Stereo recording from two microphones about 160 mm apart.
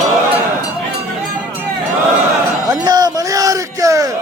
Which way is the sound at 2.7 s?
25° right (ahead or behind).